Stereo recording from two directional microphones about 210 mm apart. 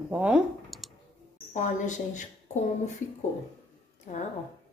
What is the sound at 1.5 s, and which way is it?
A woman's voice, 35° left (ahead or behind).